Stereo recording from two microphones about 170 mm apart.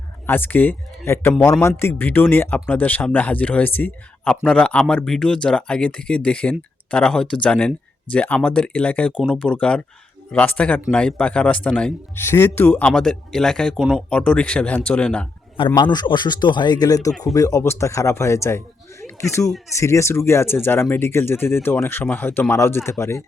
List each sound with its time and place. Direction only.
0.3 s speech: 10° left (ahead or behind)
15.5 s a man's voice: 30° left (ahead or behind)